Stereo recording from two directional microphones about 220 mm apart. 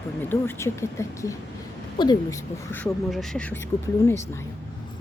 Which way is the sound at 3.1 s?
Centre (ahead or behind).